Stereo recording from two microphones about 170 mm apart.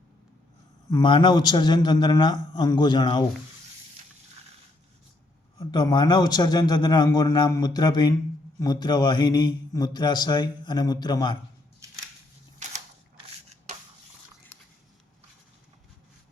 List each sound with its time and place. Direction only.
0.9 s a man's voice: 25° left (ahead or behind)
5.5 s a man's voice: 25° left (ahead or behind)